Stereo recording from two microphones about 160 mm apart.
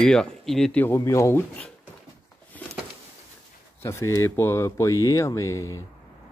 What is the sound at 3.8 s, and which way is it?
Speech, 15° left (ahead or behind).